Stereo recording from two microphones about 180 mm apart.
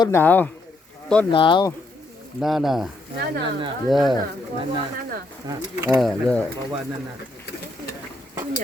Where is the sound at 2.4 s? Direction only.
Centre (ahead or behind).